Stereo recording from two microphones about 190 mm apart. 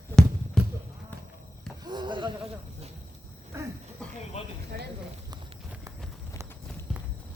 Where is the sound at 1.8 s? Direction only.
25° right (ahead or behind).